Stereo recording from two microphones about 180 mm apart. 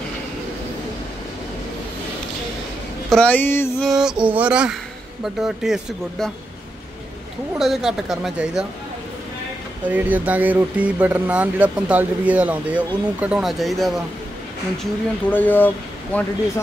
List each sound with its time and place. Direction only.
3.1 s speech: 5° left (ahead or behind)
3.8 s speech: 5° right (ahead or behind)
7.5 s speech: centre (ahead or behind)
9.8 s speech: 10° right (ahead or behind); by 16.3 s 10° left (ahead or behind)